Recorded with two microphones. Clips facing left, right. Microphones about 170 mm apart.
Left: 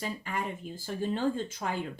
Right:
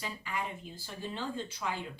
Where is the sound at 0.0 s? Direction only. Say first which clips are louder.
Left 4 dB; 45° left (ahead or behind).